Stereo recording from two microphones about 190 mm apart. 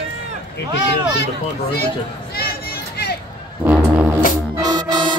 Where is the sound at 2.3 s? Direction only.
50° left (ahead or behind).